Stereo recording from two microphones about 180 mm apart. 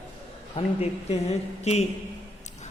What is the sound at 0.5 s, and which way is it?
A man's voice, 35° left (ahead or behind).